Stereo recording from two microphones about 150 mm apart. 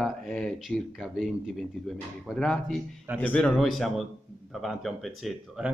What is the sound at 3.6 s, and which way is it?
Speech, centre (ahead or behind).